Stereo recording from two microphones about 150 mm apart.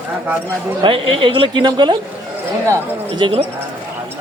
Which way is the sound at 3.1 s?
35° right (ahead or behind).